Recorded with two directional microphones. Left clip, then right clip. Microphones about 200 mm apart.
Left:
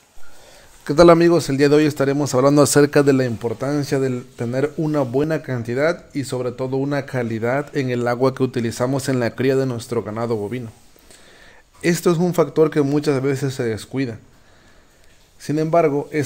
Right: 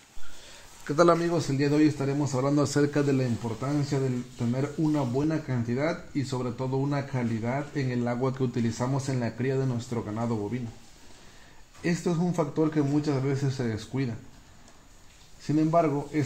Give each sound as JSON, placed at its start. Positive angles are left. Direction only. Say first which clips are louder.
{"t": 0.8, "sound": "speech", "louder": "left 11 dB", "side_deg": 30}
{"t": 11.8, "sound": "speech", "louder": "left 11 dB", "side_deg": 45}
{"t": 15.4, "sound": "speech", "louder": "left 7 dB", "side_deg": 35}